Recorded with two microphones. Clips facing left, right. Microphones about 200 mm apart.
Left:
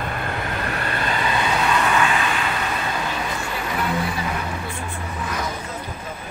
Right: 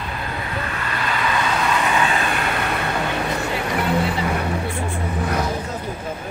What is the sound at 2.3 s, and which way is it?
Vehicle, 60° right (ahead or behind).